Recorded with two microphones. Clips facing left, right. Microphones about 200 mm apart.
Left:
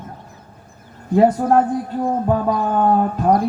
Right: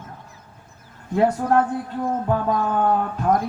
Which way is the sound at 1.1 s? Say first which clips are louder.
Left 4 dB; 35° left (ahead or behind).